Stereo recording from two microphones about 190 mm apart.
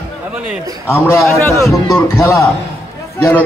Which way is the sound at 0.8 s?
15° left (ahead or behind).